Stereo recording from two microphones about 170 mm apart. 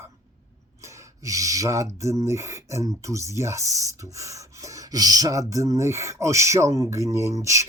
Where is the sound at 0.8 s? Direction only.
15° right (ahead or behind).